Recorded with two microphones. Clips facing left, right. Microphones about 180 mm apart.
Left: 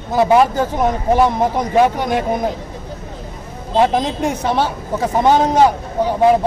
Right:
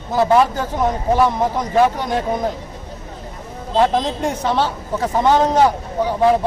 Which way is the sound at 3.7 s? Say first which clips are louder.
Left 1 dB; 10° left (ahead or behind).